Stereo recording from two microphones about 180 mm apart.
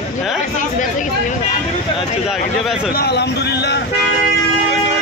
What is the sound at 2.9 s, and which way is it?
Speech, 65° left (ahead or behind).